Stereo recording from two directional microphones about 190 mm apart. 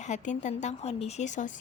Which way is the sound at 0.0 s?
40° left (ahead or behind).